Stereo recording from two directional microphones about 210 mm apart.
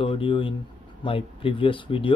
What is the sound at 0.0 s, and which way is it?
Speech, 25° left (ahead or behind).